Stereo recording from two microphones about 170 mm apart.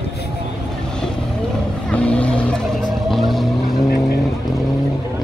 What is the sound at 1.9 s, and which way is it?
Vehicle, 5° left (ahead or behind).